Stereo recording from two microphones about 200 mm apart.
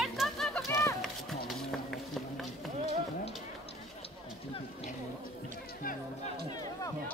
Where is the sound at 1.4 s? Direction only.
Centre (ahead or behind).